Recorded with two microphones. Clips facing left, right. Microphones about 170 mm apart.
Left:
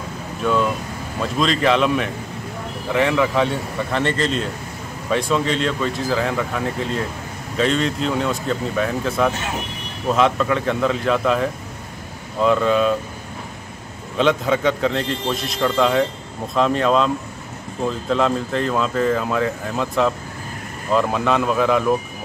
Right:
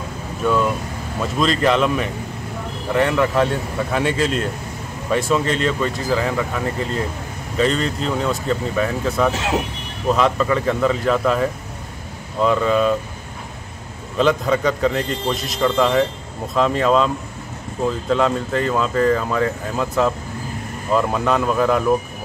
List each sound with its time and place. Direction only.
0.4 s speech: centre (ahead or behind)
9.3 s speech: 90° right
10.1 s speech: centre (ahead or behind)
12.4 s speech: centre (ahead or behind)
14.1 s speech: centre (ahead or behind)